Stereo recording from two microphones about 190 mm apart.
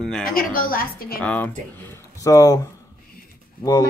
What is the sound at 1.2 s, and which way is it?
Speech, 10° left (ahead or behind).